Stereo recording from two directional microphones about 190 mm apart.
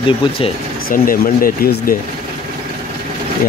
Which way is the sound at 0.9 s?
50° left (ahead or behind).